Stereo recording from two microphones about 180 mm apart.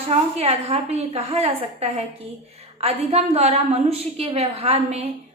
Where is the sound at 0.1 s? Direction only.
35° right (ahead or behind).